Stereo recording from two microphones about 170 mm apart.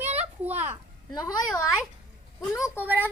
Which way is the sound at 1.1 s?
25° left (ahead or behind).